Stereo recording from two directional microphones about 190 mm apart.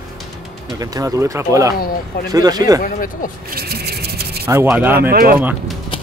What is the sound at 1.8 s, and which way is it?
Speech, 50° left (ahead or behind).